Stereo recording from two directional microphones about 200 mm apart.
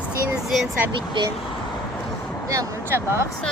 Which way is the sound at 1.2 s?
25° right (ahead or behind).